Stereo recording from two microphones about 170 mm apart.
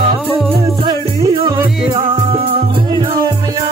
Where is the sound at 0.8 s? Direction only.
25° right (ahead or behind).